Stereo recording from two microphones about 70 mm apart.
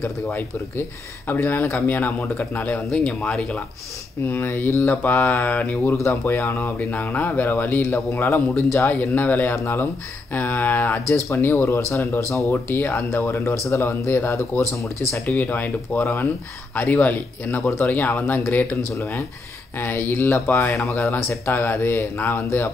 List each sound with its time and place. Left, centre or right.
0.0 s speech: left
2.9 s speech: centre
4.3 s speech: left
6.9 s speech: left
9.0 s speech: left
15.2 s speech: left
16.0 s speech: left
16.7 s speech: left
18.9 s speech: left
20.8 s speech: left